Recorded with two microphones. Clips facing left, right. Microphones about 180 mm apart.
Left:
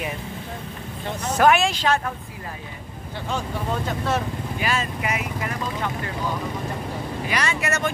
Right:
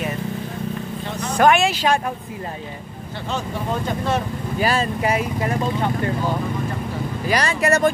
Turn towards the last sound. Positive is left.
turn(degrees=-35)  # may be behind; listen again after turning